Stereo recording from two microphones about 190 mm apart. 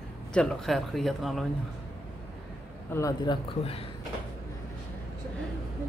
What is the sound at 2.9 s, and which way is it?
Speech, 15° left (ahead or behind).